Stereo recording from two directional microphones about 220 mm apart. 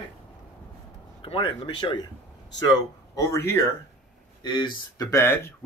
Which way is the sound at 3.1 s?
15° left (ahead or behind).